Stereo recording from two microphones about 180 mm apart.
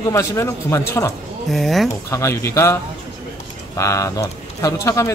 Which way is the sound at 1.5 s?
Centre (ahead or behind).